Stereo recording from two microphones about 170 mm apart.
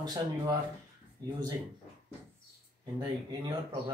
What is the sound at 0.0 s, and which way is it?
Speech, 20° right (ahead or behind).